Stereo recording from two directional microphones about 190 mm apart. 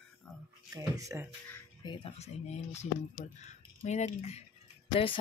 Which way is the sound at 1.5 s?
25° left (ahead or behind).